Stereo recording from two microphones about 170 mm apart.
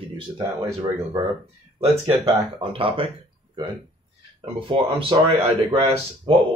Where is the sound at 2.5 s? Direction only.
30° right (ahead or behind).